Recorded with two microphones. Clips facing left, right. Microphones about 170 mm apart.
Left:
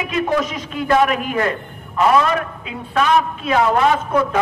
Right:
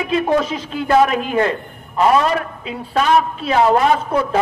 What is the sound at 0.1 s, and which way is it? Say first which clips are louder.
A man's voice: right 3 dB; 30° right (ahead or behind).